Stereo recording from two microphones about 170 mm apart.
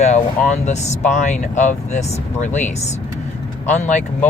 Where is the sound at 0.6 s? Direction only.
40° left (ahead or behind).